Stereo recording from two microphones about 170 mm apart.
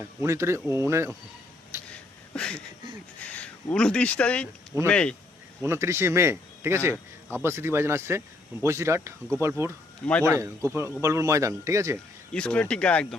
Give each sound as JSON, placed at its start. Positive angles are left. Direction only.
{"t": 0.0, "sound": "a man's voice", "side_deg": -15}
{"t": 1.9, "sound": "a sound", "side_deg": 5}
{"t": 3.2, "sound": "speech", "side_deg": 10}
{"t": 5.6, "sound": "a man's voice", "side_deg": -15}
{"t": 6.9, "sound": "speech", "side_deg": 10}
{"t": 7.4, "sound": "a man's voice", "side_deg": -15}
{"t": 12.3, "sound": "speech", "side_deg": 5}